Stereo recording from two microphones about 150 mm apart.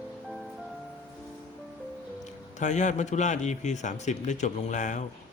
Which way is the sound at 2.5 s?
55° left (ahead or behind).